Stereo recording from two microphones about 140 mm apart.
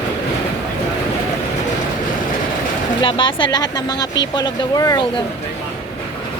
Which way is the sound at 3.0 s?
35° left (ahead or behind).